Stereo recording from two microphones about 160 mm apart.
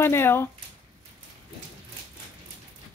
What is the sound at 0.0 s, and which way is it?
Speech, 15° left (ahead or behind).